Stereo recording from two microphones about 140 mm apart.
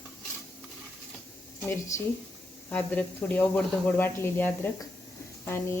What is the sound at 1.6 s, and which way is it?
A woman's voice, 20° left (ahead or behind).